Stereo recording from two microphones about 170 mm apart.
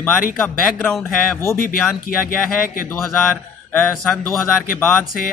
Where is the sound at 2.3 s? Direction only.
55° left (ahead or behind).